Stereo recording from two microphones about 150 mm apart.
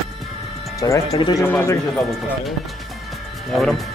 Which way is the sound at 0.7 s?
20° left (ahead or behind).